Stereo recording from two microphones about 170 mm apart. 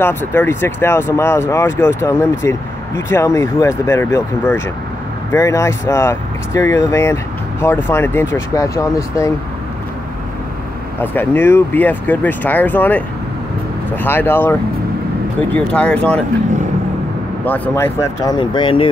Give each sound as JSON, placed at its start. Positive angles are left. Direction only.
{"t": 0.0, "sound": "speech", "side_deg": 10}
{"t": 11.0, "sound": "speech", "side_deg": 10}
{"t": 17.5, "sound": "speech", "side_deg": 15}